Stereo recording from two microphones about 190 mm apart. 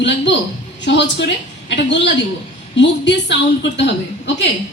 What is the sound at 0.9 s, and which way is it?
Speech, 70° left (ahead or behind).